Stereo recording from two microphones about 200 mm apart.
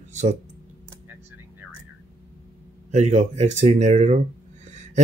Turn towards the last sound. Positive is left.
turn(degrees=-35)  # may be behind; listen again after turning